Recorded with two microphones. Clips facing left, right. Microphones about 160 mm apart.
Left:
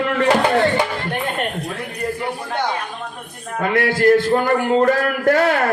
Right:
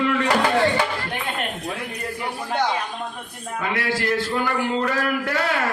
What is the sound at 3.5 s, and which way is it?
A man's voice, 50° left (ahead or behind).